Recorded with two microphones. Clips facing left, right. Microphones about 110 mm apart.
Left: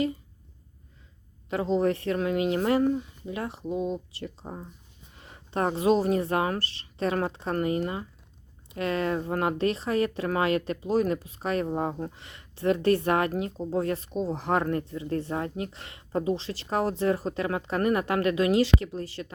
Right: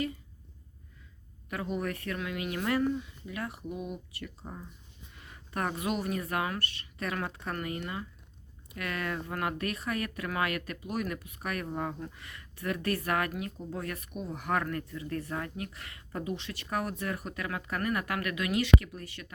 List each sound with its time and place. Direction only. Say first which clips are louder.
1.5 s speech: left 9 dB; 25° left (ahead or behind)